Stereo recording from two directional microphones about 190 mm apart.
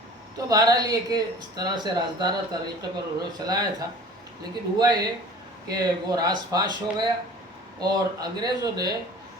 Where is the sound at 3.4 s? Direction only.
20° right (ahead or behind).